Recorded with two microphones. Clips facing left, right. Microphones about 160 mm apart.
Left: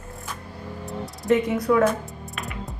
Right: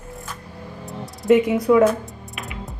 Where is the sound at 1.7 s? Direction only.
10° right (ahead or behind).